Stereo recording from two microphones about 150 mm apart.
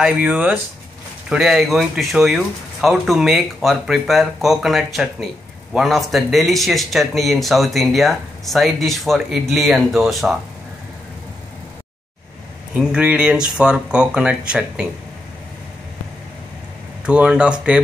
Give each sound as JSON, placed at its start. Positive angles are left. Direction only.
{"t": 0.0, "sound": "speech", "side_deg": -10}
{"t": 12.7, "sound": "speech", "side_deg": -5}
{"t": 17.0, "sound": "speech", "side_deg": -5}